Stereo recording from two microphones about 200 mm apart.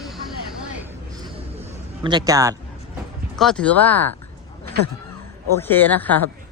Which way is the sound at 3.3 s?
Centre (ahead or behind).